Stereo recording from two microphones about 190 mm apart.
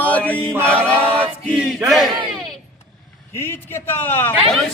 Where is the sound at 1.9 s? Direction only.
Centre (ahead or behind).